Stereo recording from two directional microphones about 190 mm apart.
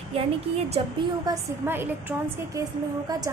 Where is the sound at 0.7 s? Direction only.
25° right (ahead or behind).